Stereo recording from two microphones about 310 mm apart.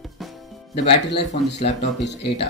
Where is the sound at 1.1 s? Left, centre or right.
Left.